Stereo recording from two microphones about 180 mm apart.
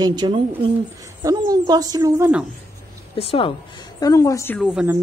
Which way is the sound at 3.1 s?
30° left (ahead or behind).